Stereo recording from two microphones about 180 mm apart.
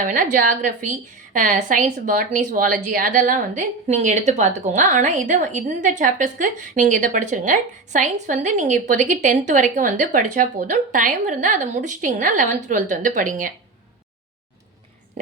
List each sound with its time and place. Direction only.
0.0 s a woman's voice: 45° right (ahead or behind)